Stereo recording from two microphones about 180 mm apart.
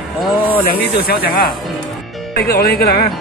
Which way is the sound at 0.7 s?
55° left (ahead or behind).